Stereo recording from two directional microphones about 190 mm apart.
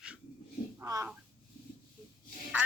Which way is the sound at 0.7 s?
15° right (ahead or behind).